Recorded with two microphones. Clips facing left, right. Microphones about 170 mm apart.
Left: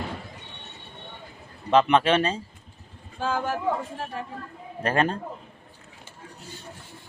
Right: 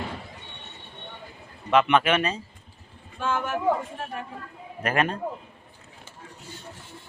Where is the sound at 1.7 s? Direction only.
30° left (ahead or behind).